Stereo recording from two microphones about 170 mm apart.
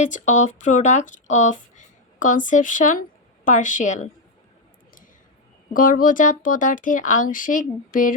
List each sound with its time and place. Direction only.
0.0 s speech: 45° left (ahead or behind)
5.7 s speech: 55° left (ahead or behind)